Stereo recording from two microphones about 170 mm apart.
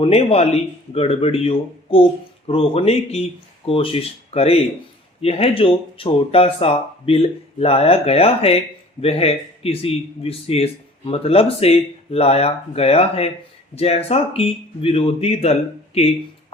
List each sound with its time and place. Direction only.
0.0 s speech: 35° left (ahead or behind)